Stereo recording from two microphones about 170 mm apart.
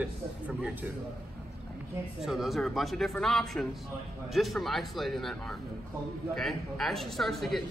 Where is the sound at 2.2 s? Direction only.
Centre (ahead or behind).